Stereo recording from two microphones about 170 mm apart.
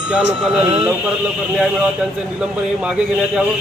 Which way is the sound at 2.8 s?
5° right (ahead or behind).